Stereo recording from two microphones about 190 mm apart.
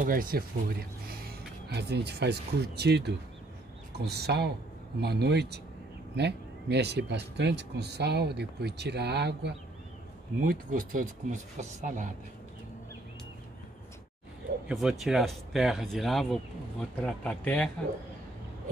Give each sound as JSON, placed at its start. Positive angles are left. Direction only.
{"t": 0.0, "sound": "speech", "side_deg": -50}
{"t": 10.4, "sound": "speech", "side_deg": -45}
{"t": 14.7, "sound": "speech", "side_deg": -5}